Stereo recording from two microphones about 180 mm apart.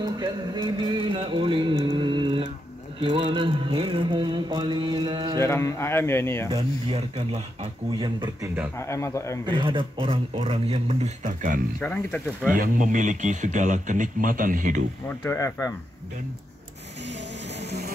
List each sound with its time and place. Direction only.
0.0 s music: 25° right (ahead or behind)
5.4 s speech: 15° left (ahead or behind)
6.5 s music: 30° right (ahead or behind)
8.7 s speech: 15° left (ahead or behind)
9.5 s speech: 25° right (ahead or behind); by 11.6 s 45° right (ahead or behind)
11.8 s speech: 10° left (ahead or behind)
12.5 s speech: 50° right (ahead or behind)
15.0 s speech: 15° left (ahead or behind)